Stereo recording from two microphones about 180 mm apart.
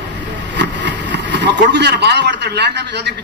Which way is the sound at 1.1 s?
75° right (ahead or behind).